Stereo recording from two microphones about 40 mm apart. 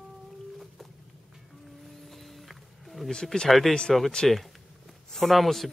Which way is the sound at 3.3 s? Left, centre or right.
Centre.